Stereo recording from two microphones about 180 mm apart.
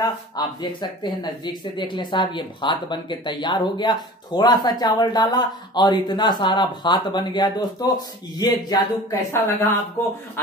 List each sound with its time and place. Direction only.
0.0 s speech: 25° left (ahead or behind)